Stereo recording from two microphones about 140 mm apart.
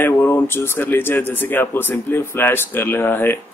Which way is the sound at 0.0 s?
15° left (ahead or behind).